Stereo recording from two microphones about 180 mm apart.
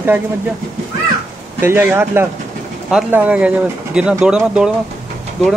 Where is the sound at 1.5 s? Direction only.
10° right (ahead or behind).